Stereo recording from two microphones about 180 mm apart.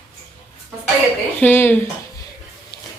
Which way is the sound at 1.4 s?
10° left (ahead or behind).